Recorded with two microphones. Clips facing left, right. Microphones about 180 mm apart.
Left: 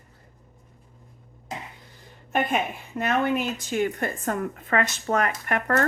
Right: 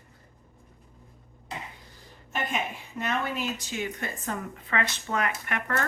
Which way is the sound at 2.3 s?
55° left (ahead or behind).